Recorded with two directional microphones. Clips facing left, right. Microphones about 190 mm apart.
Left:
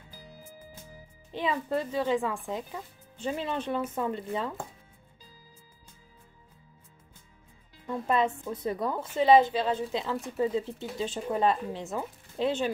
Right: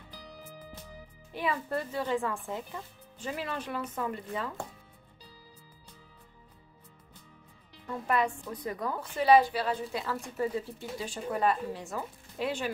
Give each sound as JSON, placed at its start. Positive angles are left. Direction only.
{"t": 1.3, "sound": "a child's voice", "side_deg": 20}
{"t": 3.3, "sound": "speech", "side_deg": 25}
{"t": 7.8, "sound": "speech", "side_deg": 25}